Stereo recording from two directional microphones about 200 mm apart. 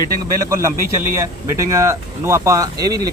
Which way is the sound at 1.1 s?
15° right (ahead or behind).